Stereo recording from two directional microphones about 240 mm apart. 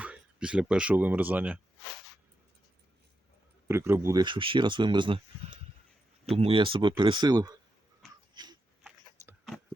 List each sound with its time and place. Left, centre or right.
0.0 s speech: centre
3.7 s speech: centre
8.4 s a sound: centre
8.8 s biting: centre